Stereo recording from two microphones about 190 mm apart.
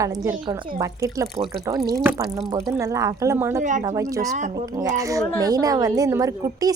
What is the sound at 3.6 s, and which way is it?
Speech, 40° right (ahead or behind).